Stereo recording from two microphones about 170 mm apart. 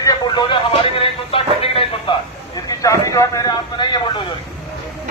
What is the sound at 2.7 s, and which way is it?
Speech, 20° left (ahead or behind).